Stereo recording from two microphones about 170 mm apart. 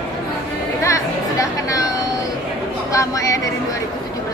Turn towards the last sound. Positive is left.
turn(degrees=20)  # may be behind; listen again after turning